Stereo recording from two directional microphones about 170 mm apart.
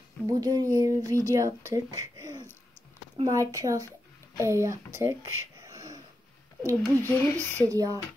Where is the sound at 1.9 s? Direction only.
20° right (ahead or behind).